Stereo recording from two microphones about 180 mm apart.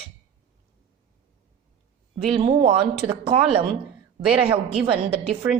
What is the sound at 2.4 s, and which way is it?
Speech, 30° right (ahead or behind).